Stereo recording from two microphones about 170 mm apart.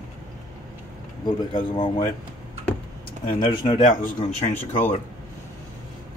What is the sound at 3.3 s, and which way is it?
Speech, 30° left (ahead or behind).